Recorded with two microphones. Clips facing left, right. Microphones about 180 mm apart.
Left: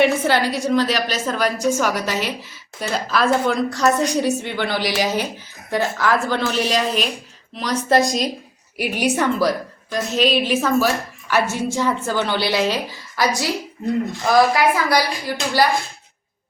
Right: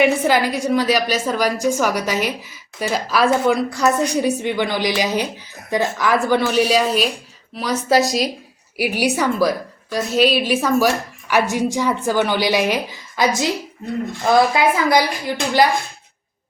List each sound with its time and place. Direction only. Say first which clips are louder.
0.0 s a woman's voice: right 1 dB; 10° right (ahead or behind)